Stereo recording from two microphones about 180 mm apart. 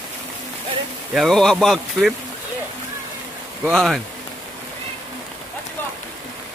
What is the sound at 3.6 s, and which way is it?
Speech, centre (ahead or behind).